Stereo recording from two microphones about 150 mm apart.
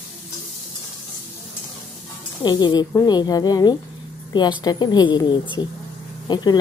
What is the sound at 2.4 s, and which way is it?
Speech, 30° left (ahead or behind).